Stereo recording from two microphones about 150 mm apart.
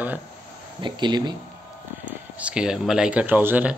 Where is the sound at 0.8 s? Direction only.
30° right (ahead or behind).